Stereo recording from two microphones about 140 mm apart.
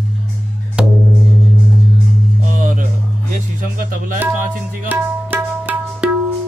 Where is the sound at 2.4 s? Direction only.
70° right (ahead or behind).